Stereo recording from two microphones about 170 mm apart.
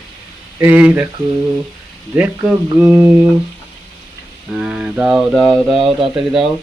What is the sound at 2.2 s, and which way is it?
Speech, 10° right (ahead or behind).